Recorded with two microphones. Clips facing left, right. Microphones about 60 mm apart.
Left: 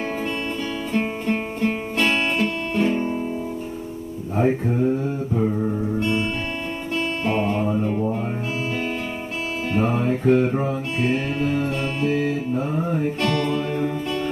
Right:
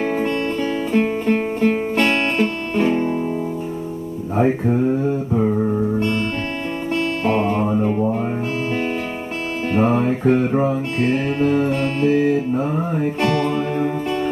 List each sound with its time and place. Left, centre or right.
0.9 s music: centre
4.4 s music: centre
7.2 s music: centre
7.8 s music: right
9.7 s music: centre
11.3 s mantra: centre
12.7 s music: right